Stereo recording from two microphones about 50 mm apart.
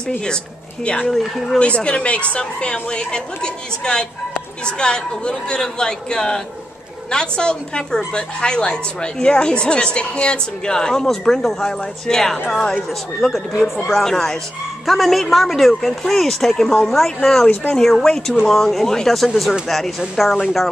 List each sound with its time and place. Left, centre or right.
0.8 s speech: left
1.1 s speech: centre
1.6 s a woman's voice: left; by 20.6 s centre